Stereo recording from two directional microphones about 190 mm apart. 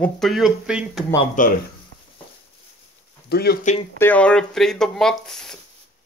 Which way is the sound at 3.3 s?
55° left (ahead or behind).